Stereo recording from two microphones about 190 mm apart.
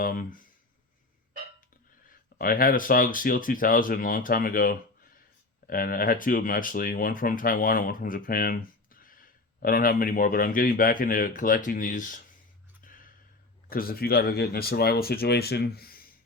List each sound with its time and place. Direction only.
0.0 s speech: 45° left (ahead or behind)
2.4 s speech: 50° left (ahead or behind)
12.8 s a sound: 45° left (ahead or behind)
13.7 s speech: 50° left (ahead or behind)